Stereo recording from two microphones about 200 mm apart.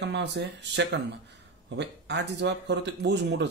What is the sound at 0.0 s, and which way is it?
Speech, 60° right (ahead or behind).